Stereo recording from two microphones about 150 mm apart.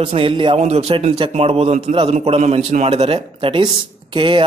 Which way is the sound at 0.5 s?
45° right (ahead or behind).